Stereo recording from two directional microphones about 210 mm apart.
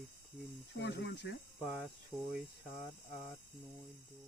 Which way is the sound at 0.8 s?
50° left (ahead or behind).